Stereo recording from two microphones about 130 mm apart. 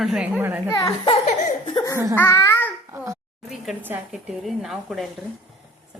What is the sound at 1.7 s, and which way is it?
Speech, 25° left (ahead or behind).